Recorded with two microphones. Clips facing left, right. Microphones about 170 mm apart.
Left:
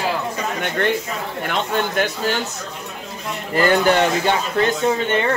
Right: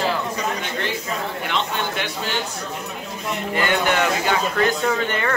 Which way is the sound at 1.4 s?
45° left (ahead or behind).